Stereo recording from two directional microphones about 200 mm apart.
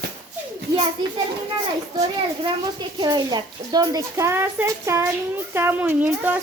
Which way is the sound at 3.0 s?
20° right (ahead or behind).